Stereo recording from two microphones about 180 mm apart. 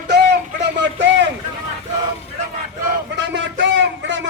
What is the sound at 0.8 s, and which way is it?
Speech, 85° right.